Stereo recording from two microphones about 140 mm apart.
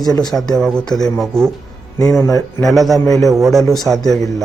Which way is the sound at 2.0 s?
25° left (ahead or behind).